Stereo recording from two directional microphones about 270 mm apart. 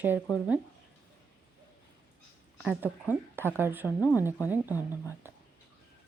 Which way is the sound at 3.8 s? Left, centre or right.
Centre.